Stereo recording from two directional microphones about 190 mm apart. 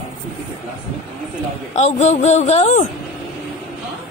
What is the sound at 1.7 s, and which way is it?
Speech, 40° left (ahead or behind).